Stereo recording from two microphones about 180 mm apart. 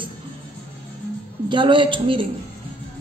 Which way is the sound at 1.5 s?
25° right (ahead or behind).